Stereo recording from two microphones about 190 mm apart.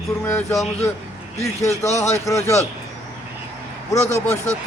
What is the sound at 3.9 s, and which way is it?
Speech, 15° left (ahead or behind).